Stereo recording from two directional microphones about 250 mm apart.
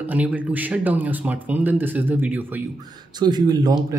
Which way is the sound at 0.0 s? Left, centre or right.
Centre.